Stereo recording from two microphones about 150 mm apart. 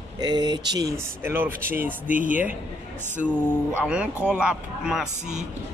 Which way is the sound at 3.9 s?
10° right (ahead or behind).